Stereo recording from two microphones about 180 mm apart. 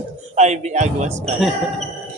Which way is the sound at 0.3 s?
40° right (ahead or behind).